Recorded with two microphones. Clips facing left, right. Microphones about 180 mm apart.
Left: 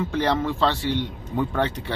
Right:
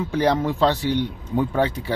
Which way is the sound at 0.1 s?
15° right (ahead or behind).